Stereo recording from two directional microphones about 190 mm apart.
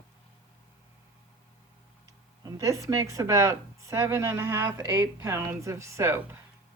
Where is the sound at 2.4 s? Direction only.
20° right (ahead or behind).